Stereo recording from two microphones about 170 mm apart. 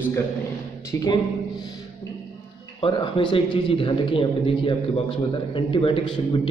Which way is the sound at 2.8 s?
30° left (ahead or behind).